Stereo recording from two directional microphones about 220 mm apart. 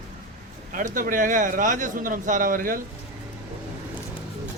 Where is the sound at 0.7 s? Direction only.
35° right (ahead or behind).